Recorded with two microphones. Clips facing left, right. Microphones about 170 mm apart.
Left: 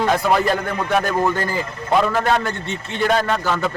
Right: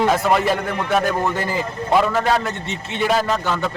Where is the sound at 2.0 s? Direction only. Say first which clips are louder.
Even; centre (ahead or behind).